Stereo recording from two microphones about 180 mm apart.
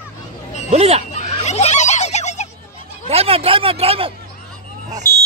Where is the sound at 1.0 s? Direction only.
40° left (ahead or behind).